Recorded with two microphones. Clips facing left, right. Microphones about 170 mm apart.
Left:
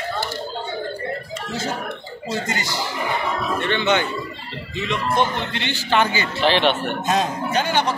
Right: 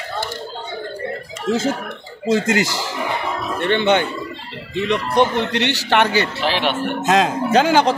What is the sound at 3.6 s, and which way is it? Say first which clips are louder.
Speech: right 5 dB; 55° right (ahead or behind).